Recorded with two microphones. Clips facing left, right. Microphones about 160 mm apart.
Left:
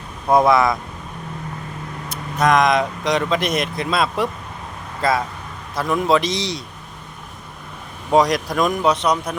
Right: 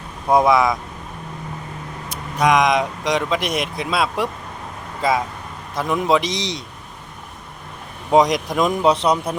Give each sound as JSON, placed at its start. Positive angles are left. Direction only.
{"t": 0.3, "sound": "speech", "side_deg": -10}
{"t": 2.0, "sound": "speech", "side_deg": -15}
{"t": 8.1, "sound": "a man's voice", "side_deg": -20}